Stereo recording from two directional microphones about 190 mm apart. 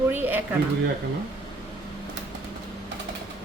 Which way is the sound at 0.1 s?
10° right (ahead or behind).